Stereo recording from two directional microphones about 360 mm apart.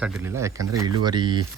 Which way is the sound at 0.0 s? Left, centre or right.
Centre.